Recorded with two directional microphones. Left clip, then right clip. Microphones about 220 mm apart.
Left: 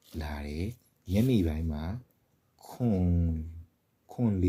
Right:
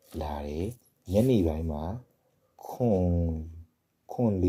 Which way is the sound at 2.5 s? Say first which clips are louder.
Right 6 dB; 20° left (ahead or behind).